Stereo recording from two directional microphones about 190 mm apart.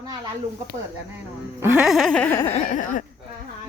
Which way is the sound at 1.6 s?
5° right (ahead or behind).